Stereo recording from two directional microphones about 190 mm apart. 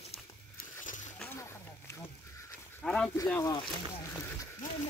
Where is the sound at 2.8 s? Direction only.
5° left (ahead or behind).